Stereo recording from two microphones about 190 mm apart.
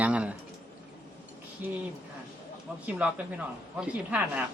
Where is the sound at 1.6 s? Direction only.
10° right (ahead or behind).